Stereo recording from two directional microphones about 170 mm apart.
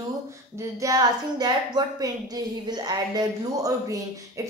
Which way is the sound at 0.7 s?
20° right (ahead or behind).